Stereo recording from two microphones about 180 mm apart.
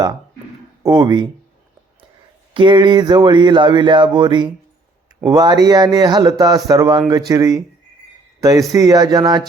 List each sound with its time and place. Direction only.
0.8 s speech: 20° right (ahead or behind)
2.5 s a man's voice: 25° right (ahead or behind)